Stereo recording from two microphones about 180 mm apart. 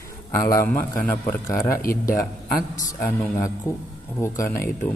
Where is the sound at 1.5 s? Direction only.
50° left (ahead or behind).